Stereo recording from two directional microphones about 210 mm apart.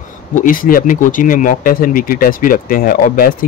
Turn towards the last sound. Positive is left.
turn(degrees=45)  # may be behind; listen again after turning